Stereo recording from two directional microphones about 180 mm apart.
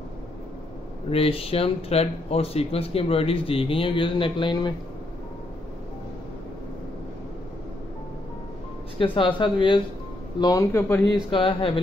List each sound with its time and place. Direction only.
1.1 s speech: 30° left (ahead or behind)
8.9 s speech: 30° left (ahead or behind)
11.2 s speech: 30° left (ahead or behind)